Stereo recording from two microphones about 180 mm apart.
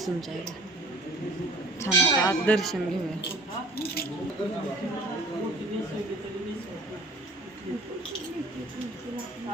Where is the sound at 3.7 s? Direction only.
60° left (ahead or behind).